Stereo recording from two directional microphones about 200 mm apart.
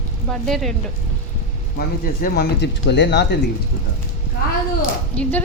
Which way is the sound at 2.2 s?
55° left (ahead or behind).